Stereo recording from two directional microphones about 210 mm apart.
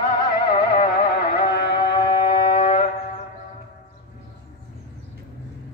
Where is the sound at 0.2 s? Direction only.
25° left (ahead or behind).